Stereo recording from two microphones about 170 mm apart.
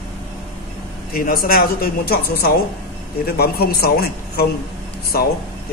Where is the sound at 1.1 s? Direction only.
60° left (ahead or behind).